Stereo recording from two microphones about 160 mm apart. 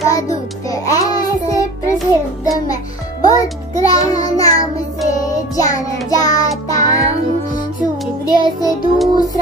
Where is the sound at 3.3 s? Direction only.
20° left (ahead or behind).